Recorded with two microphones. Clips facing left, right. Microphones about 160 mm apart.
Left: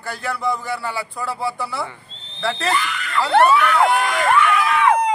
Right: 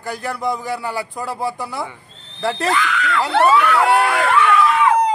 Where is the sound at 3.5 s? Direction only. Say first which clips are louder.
Right 1 dB; 75° right (ahead or behind).